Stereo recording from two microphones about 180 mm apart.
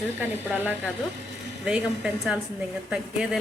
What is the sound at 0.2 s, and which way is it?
Speech, 10° right (ahead or behind).